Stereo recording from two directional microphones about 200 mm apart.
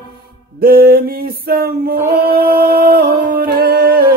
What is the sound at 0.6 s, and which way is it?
Singing, 50° right (ahead or behind).